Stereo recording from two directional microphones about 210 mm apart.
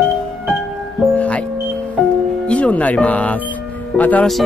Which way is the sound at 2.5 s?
5° left (ahead or behind).